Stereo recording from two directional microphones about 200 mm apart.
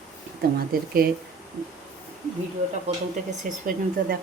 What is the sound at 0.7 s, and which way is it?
Speech, 45° right (ahead or behind).